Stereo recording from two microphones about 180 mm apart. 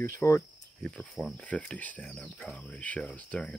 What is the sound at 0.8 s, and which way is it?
Speech, 5° left (ahead or behind).